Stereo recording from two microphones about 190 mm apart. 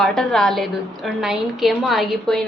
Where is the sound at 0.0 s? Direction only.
Centre (ahead or behind).